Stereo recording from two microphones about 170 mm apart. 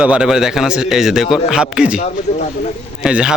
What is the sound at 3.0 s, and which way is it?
Speech, 5° right (ahead or behind).